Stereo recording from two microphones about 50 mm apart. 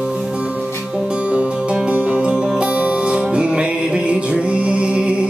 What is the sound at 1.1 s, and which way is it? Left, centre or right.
Music, right.